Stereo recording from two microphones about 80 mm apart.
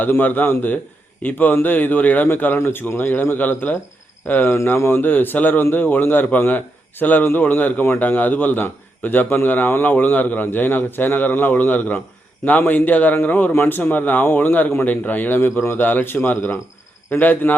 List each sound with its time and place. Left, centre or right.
0.0 s a man's voice: left